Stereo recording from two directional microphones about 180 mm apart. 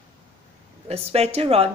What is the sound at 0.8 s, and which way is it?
Speech, 35° right (ahead or behind).